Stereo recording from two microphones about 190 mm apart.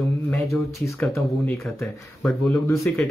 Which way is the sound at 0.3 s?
Centre (ahead or behind).